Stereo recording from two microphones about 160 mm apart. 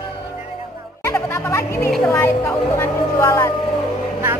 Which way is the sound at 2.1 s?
15° left (ahead or behind).